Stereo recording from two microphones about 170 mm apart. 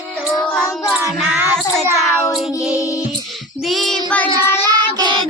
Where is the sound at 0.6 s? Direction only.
20° left (ahead or behind).